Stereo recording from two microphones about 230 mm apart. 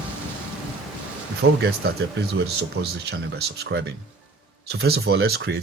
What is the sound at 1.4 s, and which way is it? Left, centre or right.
Speech, right.